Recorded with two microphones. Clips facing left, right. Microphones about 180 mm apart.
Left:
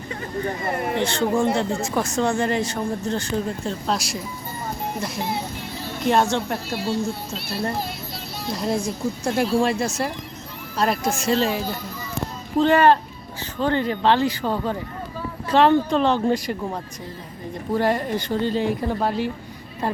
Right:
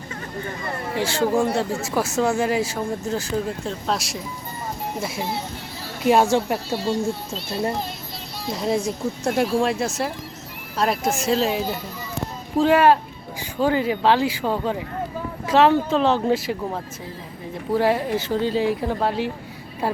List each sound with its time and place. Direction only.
0.6 s speech: 20° left (ahead or behind)
1.0 s speech: 5° right (ahead or behind)
7.3 s a child's voice: 10° left (ahead or behind)